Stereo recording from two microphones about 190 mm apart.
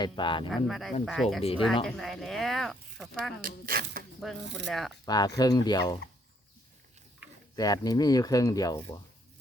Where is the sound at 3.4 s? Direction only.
50° right (ahead or behind).